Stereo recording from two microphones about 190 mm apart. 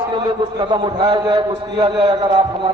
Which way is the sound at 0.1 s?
25° right (ahead or behind).